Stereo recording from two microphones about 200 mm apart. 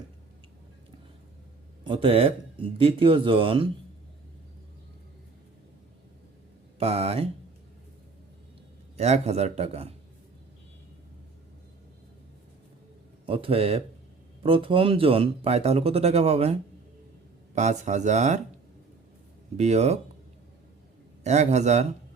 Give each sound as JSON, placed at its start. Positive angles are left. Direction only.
{"t": 1.8, "sound": "speech", "side_deg": -25}
{"t": 6.7, "sound": "speech", "side_deg": -30}
{"t": 9.0, "sound": "speech", "side_deg": -35}
{"t": 13.2, "sound": "speech", "side_deg": -25}
{"t": 19.5, "sound": "speech", "side_deg": -35}
{"t": 21.2, "sound": "speech", "side_deg": -35}